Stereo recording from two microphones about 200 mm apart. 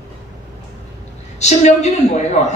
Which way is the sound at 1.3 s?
35° left (ahead or behind).